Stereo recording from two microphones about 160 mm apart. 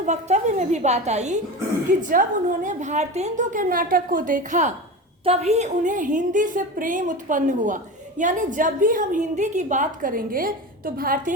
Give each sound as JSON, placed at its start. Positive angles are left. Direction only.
{"t": 0.0, "sound": "a woman's voice", "side_deg": -50}
{"t": 5.2, "sound": "a woman's voice", "side_deg": -40}